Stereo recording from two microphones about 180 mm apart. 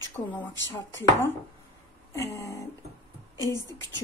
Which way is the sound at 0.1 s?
10° left (ahead or behind).